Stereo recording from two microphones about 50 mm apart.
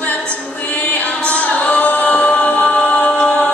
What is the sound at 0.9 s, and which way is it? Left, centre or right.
Singing, left.